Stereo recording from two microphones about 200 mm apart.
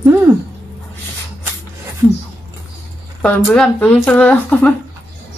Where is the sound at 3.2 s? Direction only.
5° left (ahead or behind).